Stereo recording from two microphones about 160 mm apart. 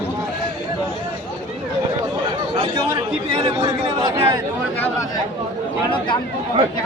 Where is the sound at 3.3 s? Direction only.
30° right (ahead or behind).